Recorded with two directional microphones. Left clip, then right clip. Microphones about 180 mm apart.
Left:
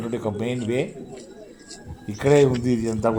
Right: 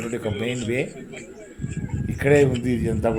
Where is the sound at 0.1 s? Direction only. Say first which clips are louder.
Left 1 dB; centre (ahead or behind).